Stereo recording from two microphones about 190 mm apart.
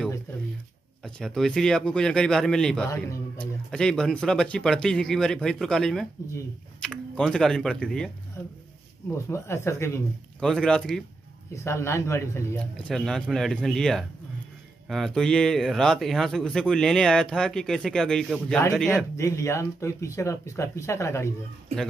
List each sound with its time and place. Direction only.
1.0 s speech: centre (ahead or behind)
2.9 s speech: 15° left (ahead or behind)
3.7 s speech: 5° left (ahead or behind)
9.3 s speech: 15° left (ahead or behind)
10.4 s speech: 5° left (ahead or behind)
19.1 s speech: 15° left (ahead or behind)